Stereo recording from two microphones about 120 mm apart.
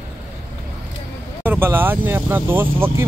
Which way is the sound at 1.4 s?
20° right (ahead or behind).